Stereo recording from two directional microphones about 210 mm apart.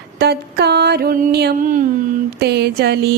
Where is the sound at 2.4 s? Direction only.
50° right (ahead or behind).